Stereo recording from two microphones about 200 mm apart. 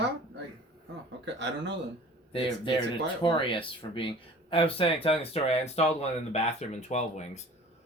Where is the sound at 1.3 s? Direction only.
60° right (ahead or behind).